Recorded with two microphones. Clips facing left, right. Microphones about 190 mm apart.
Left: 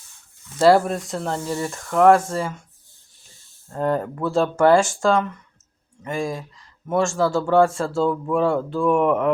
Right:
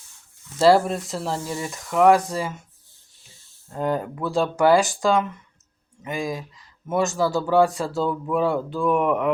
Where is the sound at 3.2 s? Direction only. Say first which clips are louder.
Even; 45° left (ahead or behind).